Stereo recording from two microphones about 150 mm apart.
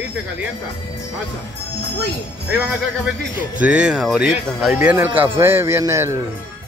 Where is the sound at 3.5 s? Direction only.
10° right (ahead or behind).